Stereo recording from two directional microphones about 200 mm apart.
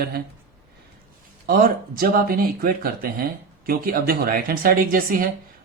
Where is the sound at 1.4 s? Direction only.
50° right (ahead or behind).